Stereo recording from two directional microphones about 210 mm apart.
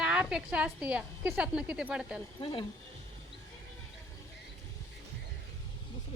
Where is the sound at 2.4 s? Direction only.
25° left (ahead or behind).